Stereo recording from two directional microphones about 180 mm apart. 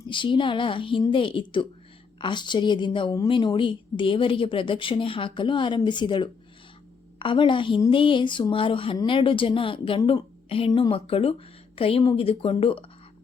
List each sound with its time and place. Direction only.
0.1 s a woman's voice: 25° left (ahead or behind)